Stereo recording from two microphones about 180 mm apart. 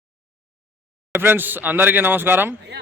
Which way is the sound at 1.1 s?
10° right (ahead or behind).